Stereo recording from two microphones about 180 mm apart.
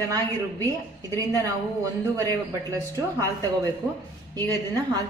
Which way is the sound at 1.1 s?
15° right (ahead or behind).